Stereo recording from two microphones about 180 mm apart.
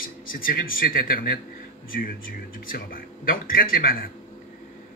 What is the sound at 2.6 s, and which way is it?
A man's voice, 50° left (ahead or behind).